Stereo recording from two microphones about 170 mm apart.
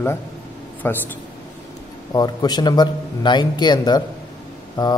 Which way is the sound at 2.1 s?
25° left (ahead or behind).